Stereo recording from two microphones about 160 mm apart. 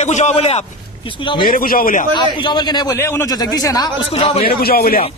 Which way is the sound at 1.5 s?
60° left (ahead or behind).